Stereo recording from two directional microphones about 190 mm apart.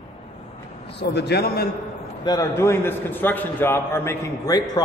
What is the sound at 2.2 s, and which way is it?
A man's voice, 20° left (ahead or behind).